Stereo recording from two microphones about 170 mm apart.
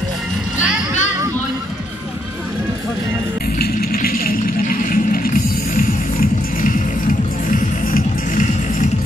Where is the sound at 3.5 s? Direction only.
60° left (ahead or behind).